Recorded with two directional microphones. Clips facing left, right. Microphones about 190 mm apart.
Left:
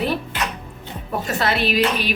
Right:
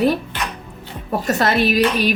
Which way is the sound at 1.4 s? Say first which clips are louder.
Right 3 dB; 45° right (ahead or behind).